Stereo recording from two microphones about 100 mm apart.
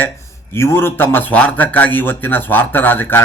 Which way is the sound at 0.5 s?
25° left (ahead or behind).